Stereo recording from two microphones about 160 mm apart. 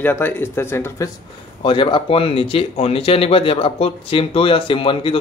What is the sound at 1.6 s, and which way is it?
A man's voice, 30° left (ahead or behind).